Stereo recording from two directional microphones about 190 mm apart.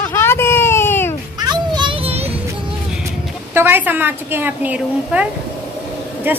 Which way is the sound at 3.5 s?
10° right (ahead or behind).